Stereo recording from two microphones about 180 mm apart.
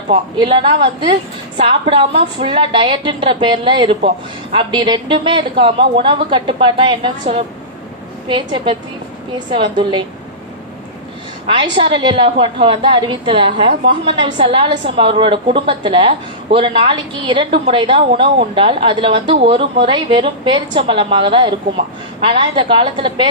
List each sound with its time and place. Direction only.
0.1 s a woman's voice: 25° right (ahead or behind)
11.4 s a woman's voice: 25° right (ahead or behind)